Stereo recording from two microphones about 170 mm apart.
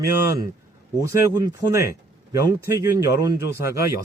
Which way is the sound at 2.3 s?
20° right (ahead or behind).